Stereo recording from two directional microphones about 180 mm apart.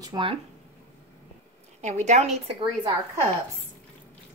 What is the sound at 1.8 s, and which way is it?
Speech, 40° right (ahead or behind).